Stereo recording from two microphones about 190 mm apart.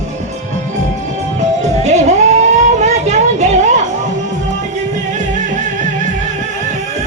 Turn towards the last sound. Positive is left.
turn(degrees=-40)  # may be behind; listen again after turning